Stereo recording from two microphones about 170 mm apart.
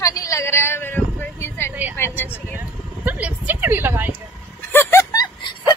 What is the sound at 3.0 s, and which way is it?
A woman's voice, 10° right (ahead or behind).